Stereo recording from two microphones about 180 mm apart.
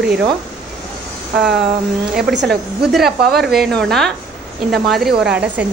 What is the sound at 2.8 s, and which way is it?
A woman's voice, centre (ahead or behind).